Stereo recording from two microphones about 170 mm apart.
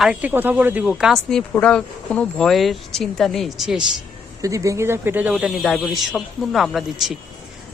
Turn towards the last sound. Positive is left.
turn(degrees=0)  # may be behind; listen again after turning